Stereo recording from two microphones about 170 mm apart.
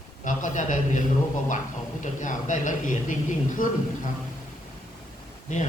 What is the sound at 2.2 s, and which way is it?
Speech, 50° left (ahead or behind).